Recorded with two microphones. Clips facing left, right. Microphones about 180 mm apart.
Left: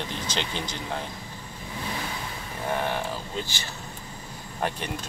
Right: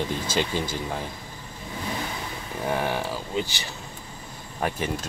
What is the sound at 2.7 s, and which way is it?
Speech, 15° right (ahead or behind).